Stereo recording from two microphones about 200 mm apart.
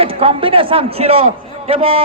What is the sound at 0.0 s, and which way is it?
A man's voice, 30° right (ahead or behind).